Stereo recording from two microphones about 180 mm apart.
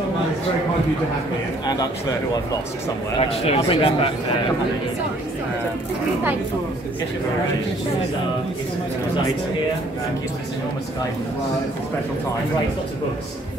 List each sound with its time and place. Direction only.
3.2 s speech: 35° left (ahead or behind)